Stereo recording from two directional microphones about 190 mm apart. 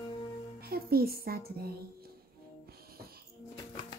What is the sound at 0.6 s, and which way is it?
A child's voice, 55° right (ahead or behind).